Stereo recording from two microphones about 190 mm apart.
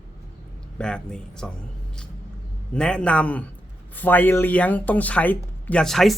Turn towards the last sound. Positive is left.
turn(degrees=0)  # may be behind; listen again after turning